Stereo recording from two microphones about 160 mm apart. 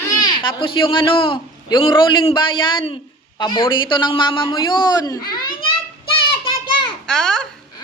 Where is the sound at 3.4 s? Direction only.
25° left (ahead or behind).